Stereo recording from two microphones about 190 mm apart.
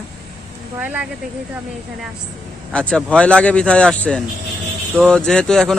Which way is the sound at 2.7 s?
5° left (ahead or behind).